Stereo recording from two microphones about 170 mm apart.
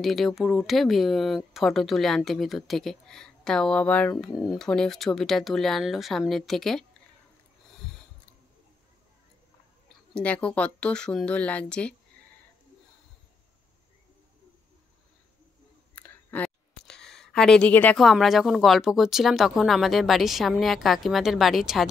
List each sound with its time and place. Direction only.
0.0 s speech: centre (ahead or behind)
10.1 s speech: 5° left (ahead or behind)
15.9 s speech: 10° left (ahead or behind)